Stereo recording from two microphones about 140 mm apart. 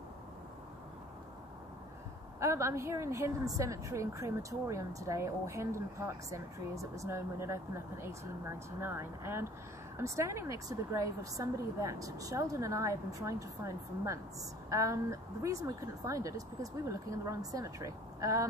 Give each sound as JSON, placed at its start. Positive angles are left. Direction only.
{"t": 2.4, "sound": "a woman's voice", "side_deg": -20}